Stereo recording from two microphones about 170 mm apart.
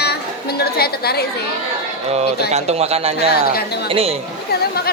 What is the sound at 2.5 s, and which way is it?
A man's voice, 40° right (ahead or behind).